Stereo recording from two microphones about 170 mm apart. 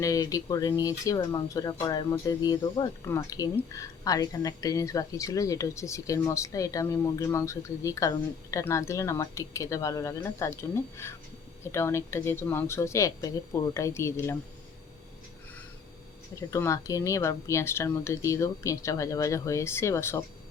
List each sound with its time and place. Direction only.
0.0 s speech: 20° left (ahead or behind)
16.3 s speech: 15° left (ahead or behind)